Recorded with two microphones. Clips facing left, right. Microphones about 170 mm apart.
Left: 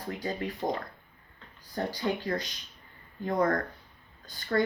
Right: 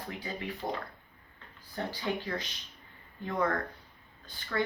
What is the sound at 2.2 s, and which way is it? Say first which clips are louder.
Speech: left 5 dB; 40° left (ahead or behind).